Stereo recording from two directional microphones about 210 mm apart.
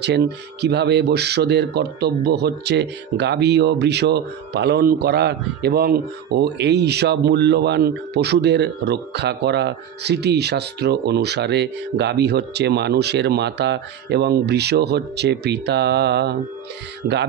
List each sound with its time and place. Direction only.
0.0 s speech: 55° right (ahead or behind)